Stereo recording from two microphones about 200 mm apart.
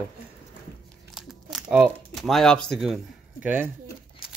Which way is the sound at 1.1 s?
5° right (ahead or behind).